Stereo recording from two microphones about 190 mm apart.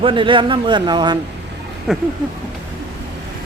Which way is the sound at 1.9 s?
5° right (ahead or behind).